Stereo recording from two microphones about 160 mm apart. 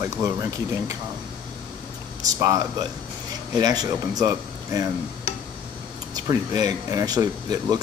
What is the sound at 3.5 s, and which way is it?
Speech, 25° right (ahead or behind).